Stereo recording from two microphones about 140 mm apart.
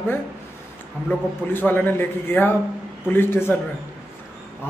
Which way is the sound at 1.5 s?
15° left (ahead or behind).